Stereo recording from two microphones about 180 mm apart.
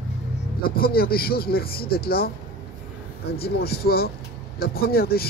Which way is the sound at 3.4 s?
60° left (ahead or behind).